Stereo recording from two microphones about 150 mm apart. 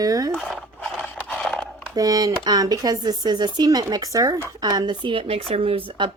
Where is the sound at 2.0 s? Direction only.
25° right (ahead or behind).